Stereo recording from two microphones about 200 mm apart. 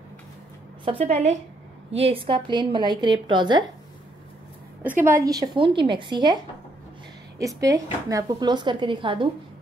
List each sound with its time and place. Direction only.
0.8 s a woman's voice: 30° right (ahead or behind)
5.2 s speech: 20° right (ahead or behind)